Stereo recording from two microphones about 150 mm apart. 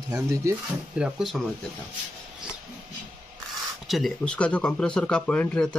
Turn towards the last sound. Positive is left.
turn(degrees=5)  # may be behind; listen again after turning